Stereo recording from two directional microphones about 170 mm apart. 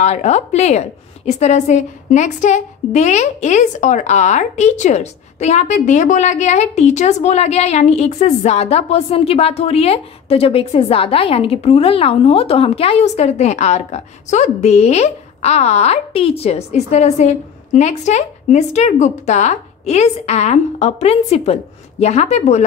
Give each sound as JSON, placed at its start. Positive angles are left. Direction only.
{"t": 0.0, "sound": "a woman's voice", "side_deg": 40}